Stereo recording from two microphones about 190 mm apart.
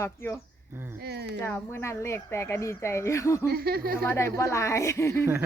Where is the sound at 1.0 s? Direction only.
60° right (ahead or behind).